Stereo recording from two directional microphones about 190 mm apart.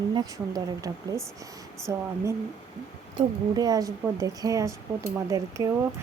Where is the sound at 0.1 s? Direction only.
20° right (ahead or behind).